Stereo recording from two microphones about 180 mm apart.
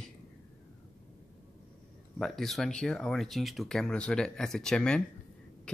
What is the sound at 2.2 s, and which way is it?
Speech, centre (ahead or behind).